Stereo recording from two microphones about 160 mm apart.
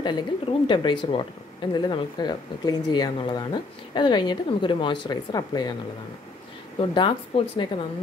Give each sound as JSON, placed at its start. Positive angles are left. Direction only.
{"t": 0.0, "sound": "a woman's voice", "side_deg": 30}
{"t": 6.8, "sound": "speech", "side_deg": 35}